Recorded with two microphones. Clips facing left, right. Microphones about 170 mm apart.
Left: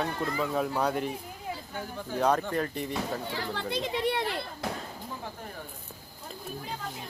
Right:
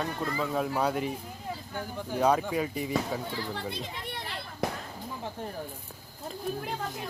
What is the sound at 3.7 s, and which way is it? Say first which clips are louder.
Speech: left 9 dB; 90° left.